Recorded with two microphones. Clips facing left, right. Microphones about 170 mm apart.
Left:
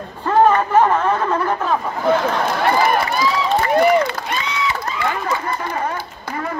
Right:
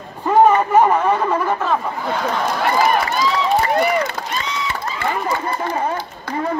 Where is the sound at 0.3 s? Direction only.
15° right (ahead or behind).